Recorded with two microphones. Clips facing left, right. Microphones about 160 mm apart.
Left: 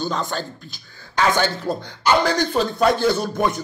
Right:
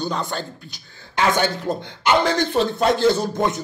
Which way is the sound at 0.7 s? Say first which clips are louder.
Even; 20° right (ahead or behind).